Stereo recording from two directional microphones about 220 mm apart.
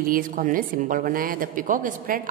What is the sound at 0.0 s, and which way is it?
A man's voice, 40° right (ahead or behind).